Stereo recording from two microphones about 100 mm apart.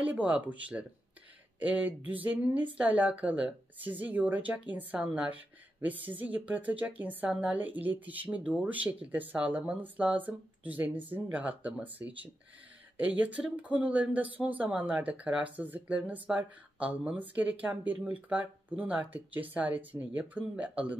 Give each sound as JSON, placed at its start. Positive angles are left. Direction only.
{"t": 0.0, "sound": "a woman's voice", "side_deg": -15}
{"t": 12.9, "sound": "a woman's voice", "side_deg": -15}